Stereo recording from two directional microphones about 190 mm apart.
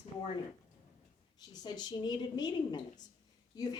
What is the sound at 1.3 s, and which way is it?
A woman's voice, 20° left (ahead or behind).